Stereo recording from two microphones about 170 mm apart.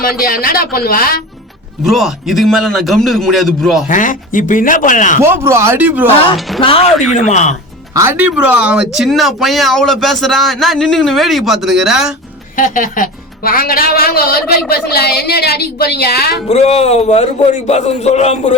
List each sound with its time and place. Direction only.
0.0 s a woman's voice: 60° left (ahead or behind)
1.8 s speech: centre (ahead or behind)
3.8 s speech: 50° left (ahead or behind)
5.2 s speech: 15° right (ahead or behind)
6.6 s speech: 35° left (ahead or behind)
7.1 s speech: 45° left (ahead or behind)
7.9 s speech: 10° right (ahead or behind)
12.5 s a woman's voice: 50° left (ahead or behind); by 16.3 s 70° left (ahead or behind)
16.5 s speech: 40° left (ahead or behind)